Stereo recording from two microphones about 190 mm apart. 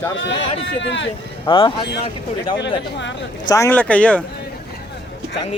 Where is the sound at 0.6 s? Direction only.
70° left (ahead or behind).